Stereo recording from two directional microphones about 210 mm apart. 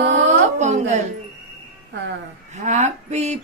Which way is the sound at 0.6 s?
30° right (ahead or behind).